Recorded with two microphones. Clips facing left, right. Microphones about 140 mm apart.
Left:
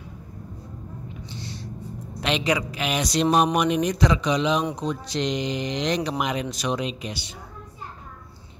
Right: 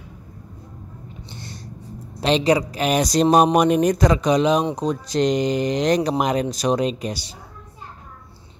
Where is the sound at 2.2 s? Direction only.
35° right (ahead or behind).